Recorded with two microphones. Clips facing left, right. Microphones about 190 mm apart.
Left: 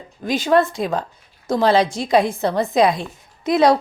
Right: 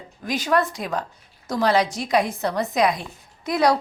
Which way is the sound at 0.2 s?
25° left (ahead or behind).